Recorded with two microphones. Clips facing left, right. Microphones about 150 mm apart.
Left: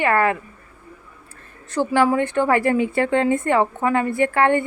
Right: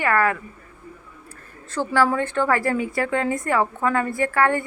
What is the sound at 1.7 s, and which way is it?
A woman's voice, 20° left (ahead or behind).